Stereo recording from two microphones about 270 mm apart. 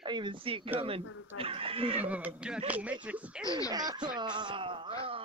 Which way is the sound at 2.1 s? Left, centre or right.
Centre.